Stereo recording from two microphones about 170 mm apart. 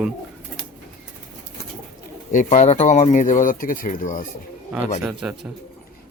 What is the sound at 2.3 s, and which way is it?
Speech, 45° left (ahead or behind).